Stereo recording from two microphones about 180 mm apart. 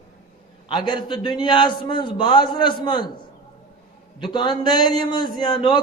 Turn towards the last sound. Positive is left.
turn(degrees=25)  # may be behind; listen again after turning